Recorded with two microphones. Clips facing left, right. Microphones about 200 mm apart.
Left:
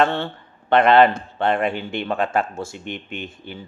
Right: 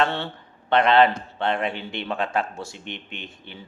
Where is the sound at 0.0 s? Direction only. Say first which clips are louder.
Left 4 dB; 50° left (ahead or behind).